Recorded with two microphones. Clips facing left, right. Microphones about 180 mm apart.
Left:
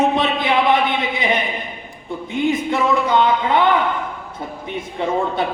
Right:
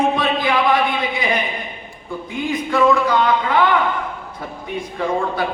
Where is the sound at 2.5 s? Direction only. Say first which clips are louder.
Right 5 dB; 25° left (ahead or behind).